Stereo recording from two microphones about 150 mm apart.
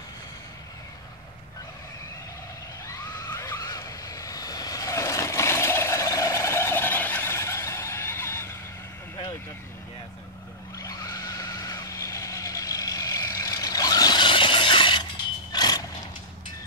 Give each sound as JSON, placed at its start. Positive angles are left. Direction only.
{"t": 2.9, "sound": "vehicle", "side_deg": 25}
{"t": 10.8, "sound": "vehicle", "side_deg": 20}
{"t": 15.5, "sound": "a sound", "side_deg": 25}